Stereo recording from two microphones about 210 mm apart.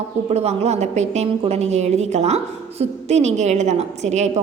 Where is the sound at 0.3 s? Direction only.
30° right (ahead or behind).